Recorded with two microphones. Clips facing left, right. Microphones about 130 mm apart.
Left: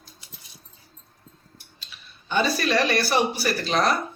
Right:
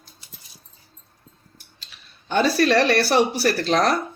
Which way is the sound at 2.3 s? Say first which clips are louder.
Right 5 dB; 70° right (ahead or behind).